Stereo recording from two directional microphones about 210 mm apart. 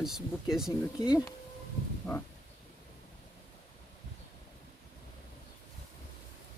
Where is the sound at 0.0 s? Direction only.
Centre (ahead or behind).